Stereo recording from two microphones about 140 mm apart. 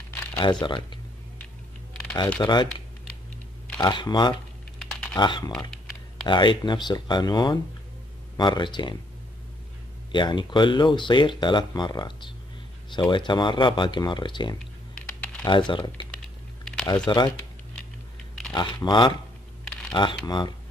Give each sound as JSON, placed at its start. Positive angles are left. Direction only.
{"t": 0.4, "sound": "speech", "side_deg": 35}
{"t": 2.4, "sound": "speech", "side_deg": 30}
{"t": 3.8, "sound": "speech", "side_deg": 30}
{"t": 4.7, "sound": "typing", "side_deg": 5}
{"t": 5.1, "sound": "speech", "side_deg": 30}
{"t": 10.1, "sound": "speech", "side_deg": 35}
{"t": 15.0, "sound": "typing", "side_deg": 10}
{"t": 15.4, "sound": "speech", "side_deg": 35}
{"t": 16.8, "sound": "speech", "side_deg": 30}
{"t": 18.5, "sound": "speech", "side_deg": 30}